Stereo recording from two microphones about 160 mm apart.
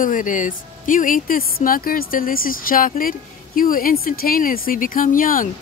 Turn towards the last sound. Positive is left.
turn(degrees=60)  # may be behind; listen again after turning